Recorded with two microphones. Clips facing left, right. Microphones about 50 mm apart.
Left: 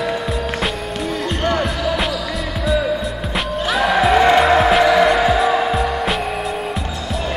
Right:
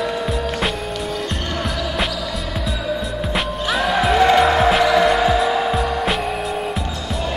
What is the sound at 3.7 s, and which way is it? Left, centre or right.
Music, centre.